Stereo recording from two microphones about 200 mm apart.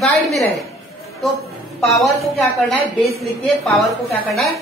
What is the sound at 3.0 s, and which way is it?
Speech, centre (ahead or behind).